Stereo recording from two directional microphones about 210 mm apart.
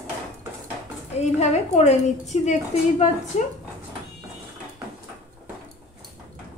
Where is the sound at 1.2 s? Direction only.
30° left (ahead or behind).